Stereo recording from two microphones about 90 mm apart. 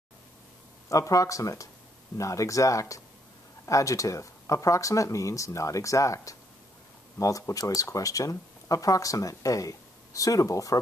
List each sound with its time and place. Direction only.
0.8 s speech: 35° left (ahead or behind)